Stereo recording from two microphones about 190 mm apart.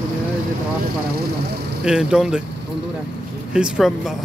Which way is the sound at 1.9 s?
5° right (ahead or behind).